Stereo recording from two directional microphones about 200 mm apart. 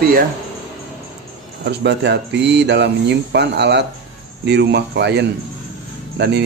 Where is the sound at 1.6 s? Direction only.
55° right (ahead or behind).